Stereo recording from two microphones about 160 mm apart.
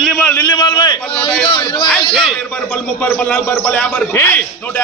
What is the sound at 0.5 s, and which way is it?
A man's voice, 25° left (ahead or behind).